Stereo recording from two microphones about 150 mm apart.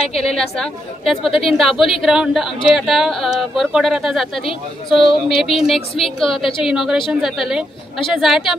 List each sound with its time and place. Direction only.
0.2 s speech: 5° left (ahead or behind)
5.0 s a sound: 35° left (ahead or behind)
5.4 s speech: centre (ahead or behind)